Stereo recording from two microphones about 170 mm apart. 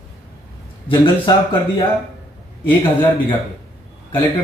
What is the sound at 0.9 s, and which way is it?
Speech, 30° left (ahead or behind).